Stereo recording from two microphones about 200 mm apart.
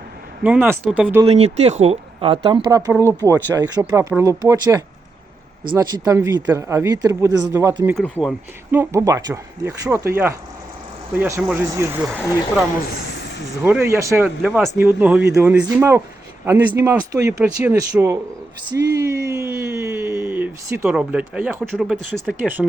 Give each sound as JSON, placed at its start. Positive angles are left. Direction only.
{"t": 0.4, "sound": "speech", "side_deg": -10}
{"t": 1.2, "sound": "speech", "side_deg": -30}
{"t": 2.6, "sound": "speech", "side_deg": -15}
{"t": 3.8, "sound": "speech", "side_deg": -5}
{"t": 4.2, "sound": "speech", "side_deg": -15}
{"t": 7.9, "sound": "speech", "side_deg": 5}
{"t": 11.1, "sound": "speech", "side_deg": -10}
{"t": 12.0, "sound": "speech", "side_deg": 5}
{"t": 13.6, "sound": "speech", "side_deg": -10}